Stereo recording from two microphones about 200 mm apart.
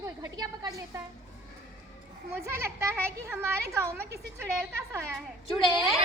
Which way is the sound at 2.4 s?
10° right (ahead or behind).